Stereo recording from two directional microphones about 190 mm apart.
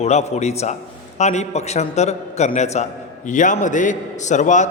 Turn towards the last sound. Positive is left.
turn(degrees=40)  # may be behind; listen again after turning